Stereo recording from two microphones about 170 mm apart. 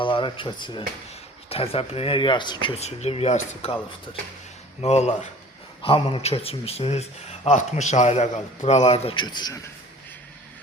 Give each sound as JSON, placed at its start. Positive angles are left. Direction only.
{"t": 0.0, "sound": "speech", "side_deg": 30}